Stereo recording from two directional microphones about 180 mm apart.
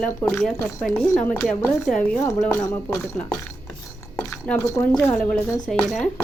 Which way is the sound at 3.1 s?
5° left (ahead or behind).